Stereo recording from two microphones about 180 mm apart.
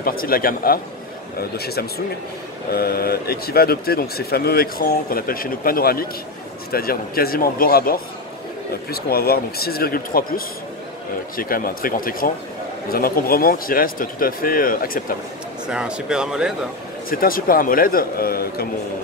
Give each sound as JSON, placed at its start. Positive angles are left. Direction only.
{"t": 0.0, "sound": "speech", "side_deg": 55}
{"t": 15.6, "sound": "speech", "side_deg": -5}
{"t": 17.1, "sound": "speech", "side_deg": 55}